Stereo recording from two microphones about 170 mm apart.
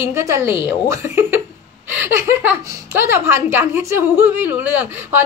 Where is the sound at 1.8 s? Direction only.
15° right (ahead or behind).